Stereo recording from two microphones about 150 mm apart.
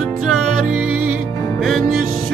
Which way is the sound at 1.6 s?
Centre (ahead or behind).